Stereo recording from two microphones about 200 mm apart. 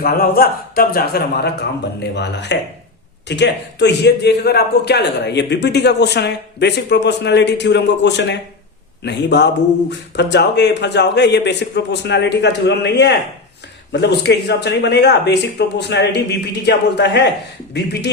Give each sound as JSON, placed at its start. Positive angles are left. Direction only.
{"t": 0.0, "sound": "a man's voice", "side_deg": 50}